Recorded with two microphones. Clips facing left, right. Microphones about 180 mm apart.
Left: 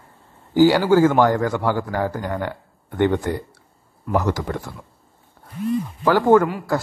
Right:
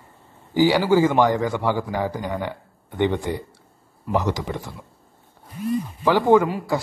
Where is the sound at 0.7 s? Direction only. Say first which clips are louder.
Left 2 dB; 10° right (ahead or behind).